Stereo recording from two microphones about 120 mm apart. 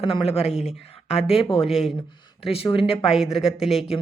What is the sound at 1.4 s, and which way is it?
Speech, 50° left (ahead or behind).